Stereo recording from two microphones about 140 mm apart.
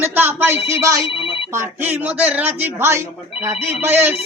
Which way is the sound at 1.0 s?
40° left (ahead or behind).